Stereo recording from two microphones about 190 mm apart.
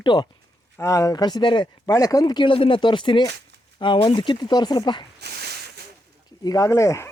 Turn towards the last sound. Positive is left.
turn(degrees=15)  # may be behind; listen again after turning